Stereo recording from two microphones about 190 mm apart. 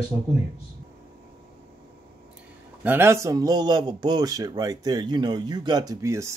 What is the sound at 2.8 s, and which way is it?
A man's voice, 10° right (ahead or behind).